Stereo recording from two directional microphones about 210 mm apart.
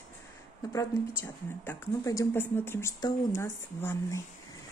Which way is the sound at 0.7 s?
10° left (ahead or behind).